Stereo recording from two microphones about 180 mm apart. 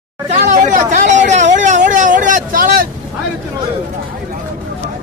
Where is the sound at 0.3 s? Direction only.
45° right (ahead or behind).